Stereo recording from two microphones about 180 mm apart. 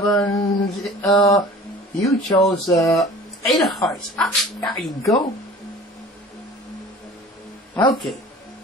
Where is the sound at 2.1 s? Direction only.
20° left (ahead or behind).